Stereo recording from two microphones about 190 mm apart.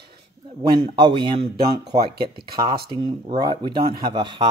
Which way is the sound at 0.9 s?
25° right (ahead or behind).